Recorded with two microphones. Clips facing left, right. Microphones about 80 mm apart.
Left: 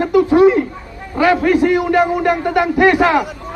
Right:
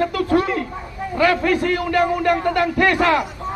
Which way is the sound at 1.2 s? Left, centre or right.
Centre.